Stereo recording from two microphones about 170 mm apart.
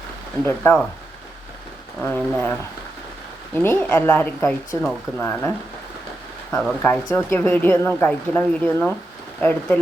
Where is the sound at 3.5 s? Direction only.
15° left (ahead or behind).